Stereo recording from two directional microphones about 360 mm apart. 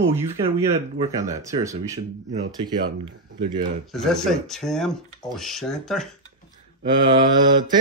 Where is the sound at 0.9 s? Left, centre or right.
Centre.